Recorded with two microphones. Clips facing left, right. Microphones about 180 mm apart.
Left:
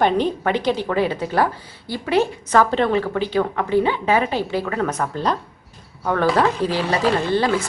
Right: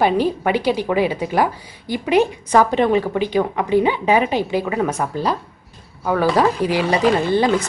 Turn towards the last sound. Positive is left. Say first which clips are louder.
# right 3 dB
turn(degrees=-15)  # may be behind; listen again after turning